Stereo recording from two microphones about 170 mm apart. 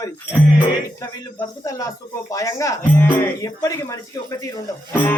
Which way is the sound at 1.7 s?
20° left (ahead or behind).